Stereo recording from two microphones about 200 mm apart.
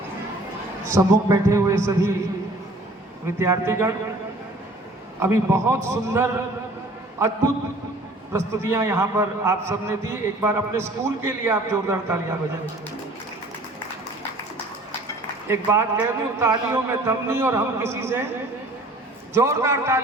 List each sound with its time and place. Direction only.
0.9 s a man's voice: 15° right (ahead or behind)
3.3 s a man's voice: 15° right (ahead or behind)
5.2 s a man's voice: 15° right (ahead or behind)
15.4 s a man's voice: 10° right (ahead or behind)
19.3 s a man's voice: 15° right (ahead or behind)